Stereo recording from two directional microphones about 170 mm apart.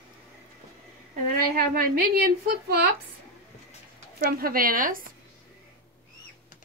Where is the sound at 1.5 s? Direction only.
65° right (ahead or behind).